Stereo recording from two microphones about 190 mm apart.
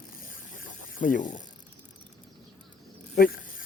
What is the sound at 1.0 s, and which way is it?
Speech, 45° left (ahead or behind).